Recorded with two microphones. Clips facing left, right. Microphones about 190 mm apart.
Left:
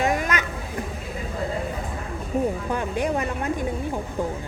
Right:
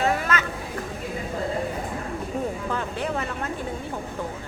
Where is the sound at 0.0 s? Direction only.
15° left (ahead or behind).